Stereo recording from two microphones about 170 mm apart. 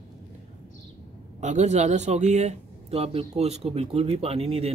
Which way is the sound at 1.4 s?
45° right (ahead or behind).